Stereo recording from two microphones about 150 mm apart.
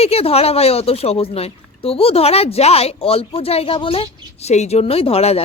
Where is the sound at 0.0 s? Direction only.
40° left (ahead or behind).